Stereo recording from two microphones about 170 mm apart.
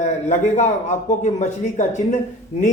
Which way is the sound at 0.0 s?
45° left (ahead or behind).